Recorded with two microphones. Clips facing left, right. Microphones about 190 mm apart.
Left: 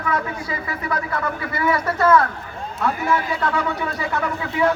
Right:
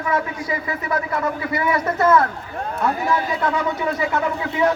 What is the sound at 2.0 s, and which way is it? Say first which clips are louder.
Speech: even; 20° right (ahead or behind).